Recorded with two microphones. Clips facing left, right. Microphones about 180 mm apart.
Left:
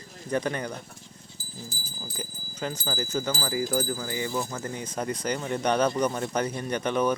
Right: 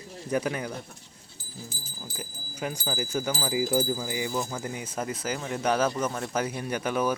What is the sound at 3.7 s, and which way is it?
Wind chime, 20° right (ahead or behind).